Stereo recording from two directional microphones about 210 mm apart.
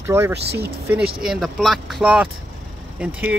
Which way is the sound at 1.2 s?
Centre (ahead or behind).